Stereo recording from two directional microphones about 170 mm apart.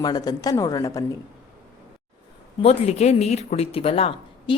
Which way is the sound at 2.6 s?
40° left (ahead or behind).